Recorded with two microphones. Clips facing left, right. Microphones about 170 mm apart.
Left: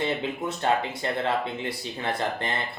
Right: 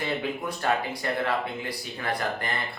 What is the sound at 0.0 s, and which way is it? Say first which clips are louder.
Speech: left 2 dB; 25° left (ahead or behind).